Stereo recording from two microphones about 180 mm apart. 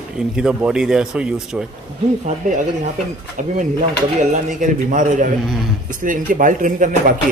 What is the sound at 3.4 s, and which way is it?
Speech, 45° right (ahead or behind).